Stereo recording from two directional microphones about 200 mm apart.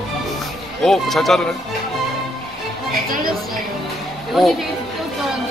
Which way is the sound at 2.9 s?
45° right (ahead or behind).